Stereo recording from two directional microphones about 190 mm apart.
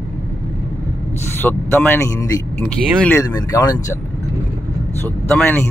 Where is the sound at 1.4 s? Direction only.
10° left (ahead or behind).